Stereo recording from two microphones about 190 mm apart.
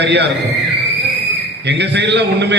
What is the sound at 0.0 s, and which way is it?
Speech, 65° right (ahead or behind).